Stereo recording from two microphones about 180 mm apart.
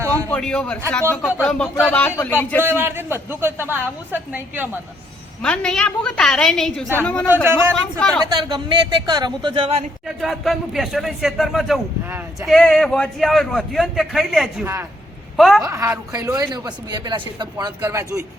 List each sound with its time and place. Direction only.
0.3 s a man's voice: 5° left (ahead or behind)
2.6 s a woman's voice: 15° right (ahead or behind)
5.4 s a man's voice: 5° left (ahead or behind)
8.3 s speech: 25° right (ahead or behind)
10.2 s a man's voice: centre (ahead or behind)
14.6 s a woman's voice: 15° right (ahead or behind)
15.4 s a man's voice: centre (ahead or behind)
15.6 s speech: 15° right (ahead or behind)